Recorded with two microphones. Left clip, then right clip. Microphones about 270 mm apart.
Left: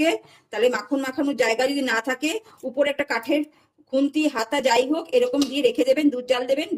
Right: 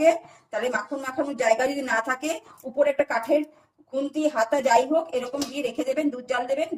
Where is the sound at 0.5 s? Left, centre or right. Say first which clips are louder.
Left 5 dB; left.